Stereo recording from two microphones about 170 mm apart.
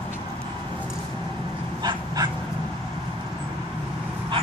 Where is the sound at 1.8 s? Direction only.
25° right (ahead or behind).